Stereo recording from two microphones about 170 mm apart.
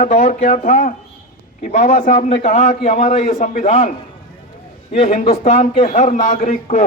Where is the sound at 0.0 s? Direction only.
50° left (ahead or behind).